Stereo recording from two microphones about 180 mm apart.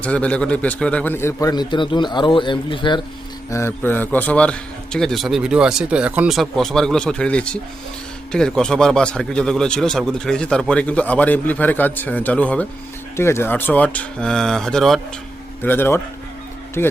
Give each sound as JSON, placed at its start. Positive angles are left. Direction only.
{"t": 0.0, "sound": "a man's voice", "side_deg": 5}
{"t": 3.5, "sound": "a man's voice", "side_deg": 15}